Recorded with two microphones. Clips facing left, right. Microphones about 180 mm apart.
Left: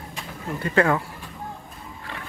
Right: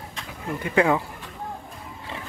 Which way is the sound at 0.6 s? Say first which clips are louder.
Even; 15° right (ahead or behind).